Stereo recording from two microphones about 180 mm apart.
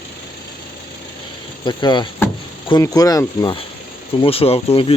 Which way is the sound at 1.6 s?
25° left (ahead or behind).